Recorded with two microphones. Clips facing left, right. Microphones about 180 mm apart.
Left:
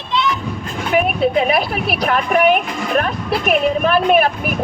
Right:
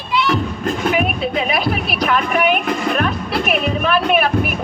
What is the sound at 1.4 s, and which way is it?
A woman's voice, 50° left (ahead or behind).